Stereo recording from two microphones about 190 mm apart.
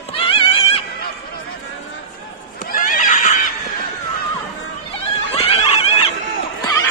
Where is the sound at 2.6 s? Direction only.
45° left (ahead or behind).